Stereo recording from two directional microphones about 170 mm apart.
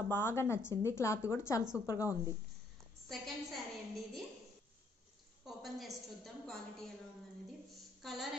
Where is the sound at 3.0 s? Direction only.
Centre (ahead or behind).